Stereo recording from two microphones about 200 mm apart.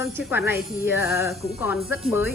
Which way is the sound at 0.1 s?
5° right (ahead or behind).